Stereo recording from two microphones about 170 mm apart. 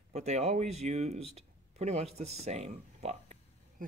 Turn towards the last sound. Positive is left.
turn(degrees=-40)  # may be behind; listen again after turning